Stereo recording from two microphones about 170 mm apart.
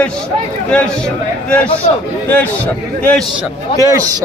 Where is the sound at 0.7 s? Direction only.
5° left (ahead or behind).